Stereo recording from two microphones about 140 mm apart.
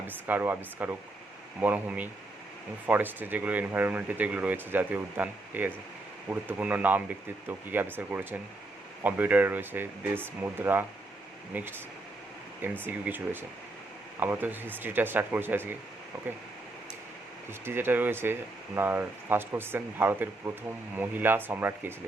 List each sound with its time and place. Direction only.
0.3 s speech: 15° right (ahead or behind)
12.8 s speech: 15° right (ahead or behind)
17.7 s speech: 15° right (ahead or behind)